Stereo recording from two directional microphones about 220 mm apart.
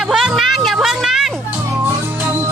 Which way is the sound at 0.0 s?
Centre (ahead or behind).